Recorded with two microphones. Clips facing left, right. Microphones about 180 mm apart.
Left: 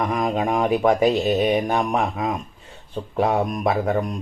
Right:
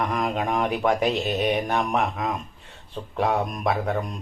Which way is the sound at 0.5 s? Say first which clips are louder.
Left 5 dB; 5° left (ahead or behind).